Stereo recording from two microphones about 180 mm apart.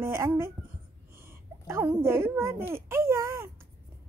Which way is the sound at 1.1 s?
15° right (ahead or behind).